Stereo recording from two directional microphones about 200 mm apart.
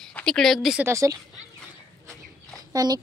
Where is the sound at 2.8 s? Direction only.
20° right (ahead or behind).